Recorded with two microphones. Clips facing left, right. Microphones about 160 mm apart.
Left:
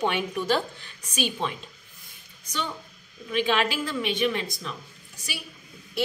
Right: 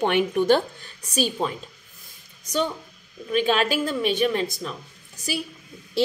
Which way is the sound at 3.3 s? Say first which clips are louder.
Right 3 dB; 40° right (ahead or behind).